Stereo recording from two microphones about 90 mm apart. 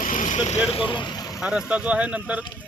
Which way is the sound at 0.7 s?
70° left (ahead or behind).